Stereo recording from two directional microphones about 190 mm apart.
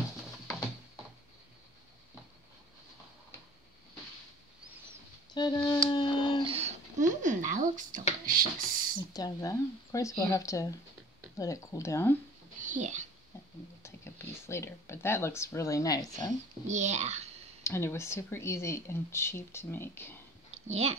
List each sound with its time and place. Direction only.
5.3 s music: 20° left (ahead or behind)
6.4 s a sound: 30° right (ahead or behind)
8.3 s speech: 45° right (ahead or behind)
9.1 s speech: 20° left (ahead or behind)
12.5 s a sound: 40° right (ahead or behind)
13.8 s speech: 15° left (ahead or behind)
16.6 s a child's voice: 35° right (ahead or behind)
17.6 s speech: 15° left (ahead or behind)
20.6 s speech: 35° right (ahead or behind)